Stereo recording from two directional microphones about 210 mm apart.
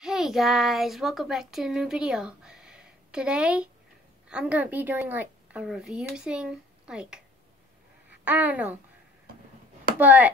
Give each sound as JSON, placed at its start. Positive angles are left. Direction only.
{"t": 0.0, "sound": "a child's voice", "side_deg": 0}
{"t": 8.3, "sound": "a woman's voice", "side_deg": -5}
{"t": 9.9, "sound": "a woman's voice", "side_deg": -5}